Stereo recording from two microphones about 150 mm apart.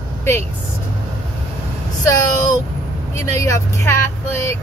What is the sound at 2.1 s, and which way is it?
Speech, 25° left (ahead or behind).